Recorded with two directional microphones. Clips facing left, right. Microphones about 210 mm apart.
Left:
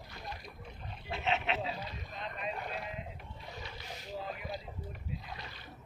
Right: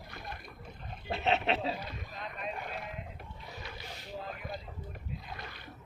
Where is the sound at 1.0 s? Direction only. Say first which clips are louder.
Right 4 dB; 35° right (ahead or behind).